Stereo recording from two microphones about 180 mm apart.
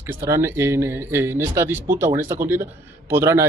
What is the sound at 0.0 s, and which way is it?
Speech, 15° right (ahead or behind).